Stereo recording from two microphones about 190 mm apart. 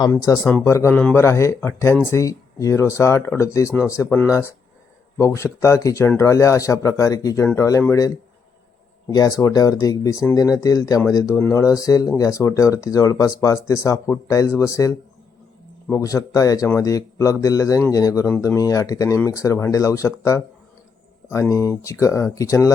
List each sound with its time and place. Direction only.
0.1 s speech: 15° left (ahead or behind)
21.5 s speech: 15° left (ahead or behind)